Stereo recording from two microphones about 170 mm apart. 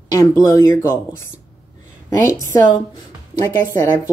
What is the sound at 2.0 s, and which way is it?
A woman's voice, 15° left (ahead or behind).